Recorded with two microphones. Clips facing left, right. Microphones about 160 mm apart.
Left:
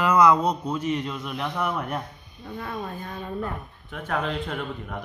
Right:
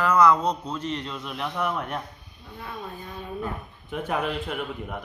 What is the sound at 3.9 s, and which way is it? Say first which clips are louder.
Speech: right 1 dB; 10° right (ahead or behind).